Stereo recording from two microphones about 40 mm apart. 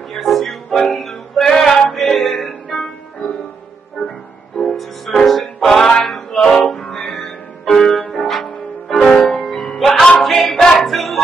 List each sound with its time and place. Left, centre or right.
0.1 s music: centre
4.0 s music: left
5.2 s music: centre
10.1 s choir: centre